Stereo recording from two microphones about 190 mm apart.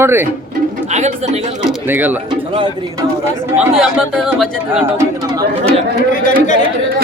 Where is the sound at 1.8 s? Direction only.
10° right (ahead or behind).